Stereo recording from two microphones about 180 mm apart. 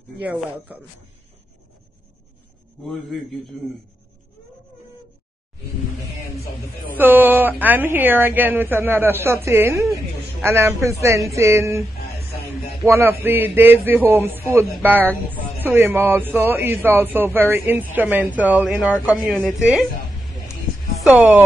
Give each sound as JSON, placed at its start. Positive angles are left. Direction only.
{"t": 0.2, "sound": "a man's voice", "side_deg": -10}
{"t": 2.8, "sound": "a woman's voice", "side_deg": 0}
{"t": 7.0, "sound": "a man's voice", "side_deg": -10}
{"t": 12.8, "sound": "a man's voice", "side_deg": -10}
{"t": 21.0, "sound": "a man's voice", "side_deg": -5}